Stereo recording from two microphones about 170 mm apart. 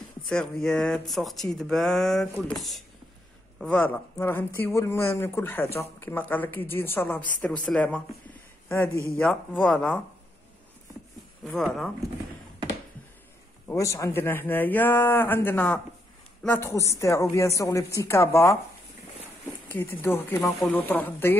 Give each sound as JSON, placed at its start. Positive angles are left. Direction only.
{"t": 0.3, "sound": "speech", "side_deg": 5}
{"t": 11.4, "sound": "speech", "side_deg": 5}
{"t": 13.7, "sound": "speech", "side_deg": 20}
{"t": 19.7, "sound": "speech", "side_deg": 15}
{"t": 20.3, "sound": "speech", "side_deg": 0}
{"t": 20.7, "sound": "speech", "side_deg": 10}